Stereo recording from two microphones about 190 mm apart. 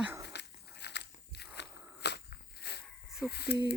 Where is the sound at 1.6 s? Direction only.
65° left (ahead or behind).